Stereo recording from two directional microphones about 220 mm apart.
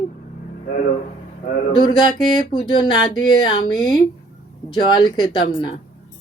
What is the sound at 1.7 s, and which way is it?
Speech, 20° left (ahead or behind).